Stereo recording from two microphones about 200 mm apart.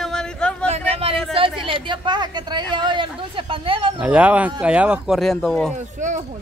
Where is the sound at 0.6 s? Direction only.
30° right (ahead or behind).